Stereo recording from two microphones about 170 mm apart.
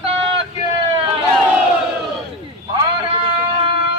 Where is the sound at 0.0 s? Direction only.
35° right (ahead or behind).